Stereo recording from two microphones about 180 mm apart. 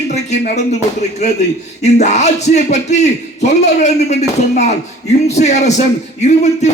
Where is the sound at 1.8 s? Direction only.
40° left (ahead or behind).